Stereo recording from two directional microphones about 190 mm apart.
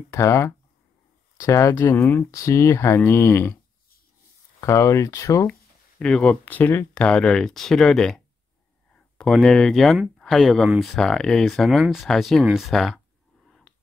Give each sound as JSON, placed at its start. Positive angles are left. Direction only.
{"t": 0.1, "sound": "speech", "side_deg": 15}
{"t": 4.6, "sound": "speech", "side_deg": 15}
{"t": 5.5, "sound": "speech", "side_deg": 5}
{"t": 13.5, "sound": "a sound", "side_deg": 0}